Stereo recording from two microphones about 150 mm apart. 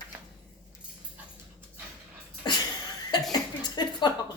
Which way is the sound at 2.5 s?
30° left (ahead or behind).